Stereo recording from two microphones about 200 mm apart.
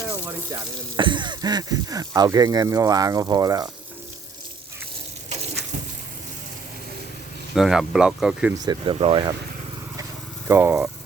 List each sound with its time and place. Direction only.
0.5 s speech: 25° right (ahead or behind)
7.5 s speech: centre (ahead or behind)
8.6 s speech: 25° right (ahead or behind)
10.5 s speech: 10° right (ahead or behind)